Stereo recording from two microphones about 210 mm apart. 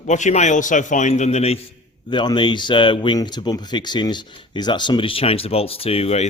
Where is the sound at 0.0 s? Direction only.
35° left (ahead or behind).